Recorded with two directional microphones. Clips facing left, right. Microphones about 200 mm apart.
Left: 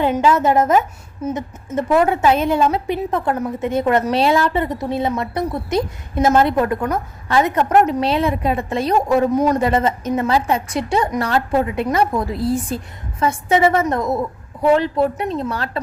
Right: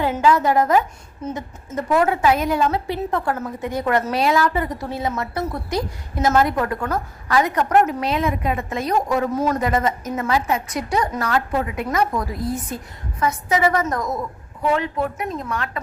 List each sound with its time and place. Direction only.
0.0 s a woman's voice: 20° left (ahead or behind)
9.6 s a woman's voice: 30° left (ahead or behind)